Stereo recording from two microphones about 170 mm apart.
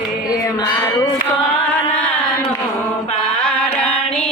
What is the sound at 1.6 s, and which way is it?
Carnatic music, 10° left (ahead or behind).